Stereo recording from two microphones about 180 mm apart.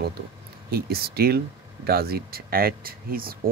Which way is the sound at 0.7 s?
60° right (ahead or behind).